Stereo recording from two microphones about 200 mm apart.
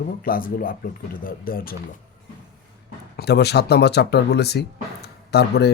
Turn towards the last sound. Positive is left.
turn(degrees=55)  # may be behind; listen again after turning